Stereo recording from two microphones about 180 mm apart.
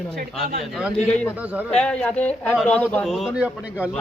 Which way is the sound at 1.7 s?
5° left (ahead or behind).